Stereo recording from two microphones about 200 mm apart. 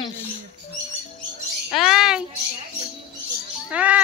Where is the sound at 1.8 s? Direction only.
Centre (ahead or behind).